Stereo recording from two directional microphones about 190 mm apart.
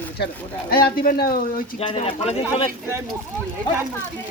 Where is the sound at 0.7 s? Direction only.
50° left (ahead or behind).